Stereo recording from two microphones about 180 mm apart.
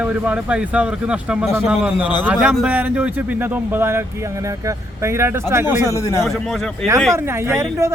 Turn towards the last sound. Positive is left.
turn(degrees=-15)  # may be behind; listen again after turning